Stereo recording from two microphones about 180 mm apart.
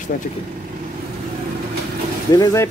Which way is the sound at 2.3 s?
15° left (ahead or behind).